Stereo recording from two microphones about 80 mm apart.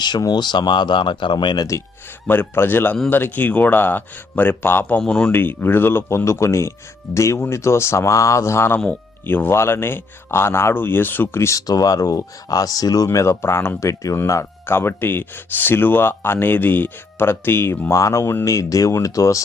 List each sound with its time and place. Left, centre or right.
0.0 s speech: left
2.2 s speech: left
11.6 s speech: left
13.1 s speech: left